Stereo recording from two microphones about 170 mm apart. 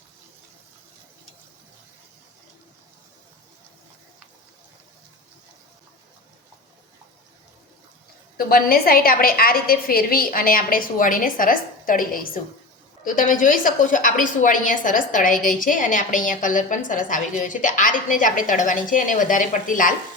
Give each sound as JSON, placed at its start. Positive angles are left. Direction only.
{"t": 8.4, "sound": "a woman's voice", "side_deg": 60}